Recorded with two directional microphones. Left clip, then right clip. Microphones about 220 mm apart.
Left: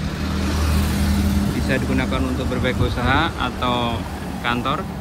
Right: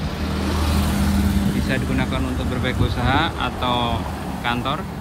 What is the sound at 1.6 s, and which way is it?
Speech, 5° right (ahead or behind).